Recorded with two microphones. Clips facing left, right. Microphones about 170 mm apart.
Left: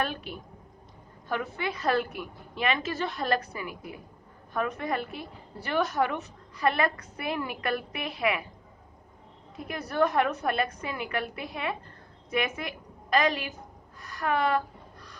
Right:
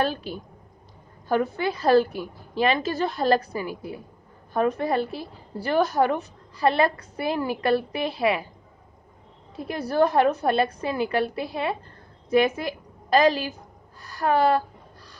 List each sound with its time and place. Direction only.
0.0 s a woman's voice: 35° right (ahead or behind)
9.6 s a woman's voice: 30° right (ahead or behind)